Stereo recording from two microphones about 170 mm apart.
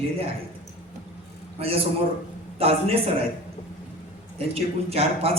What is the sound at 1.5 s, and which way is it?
A woman's voice, 35° right (ahead or behind).